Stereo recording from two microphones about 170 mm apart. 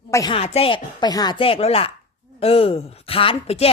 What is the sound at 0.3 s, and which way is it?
Speech, 35° left (ahead or behind).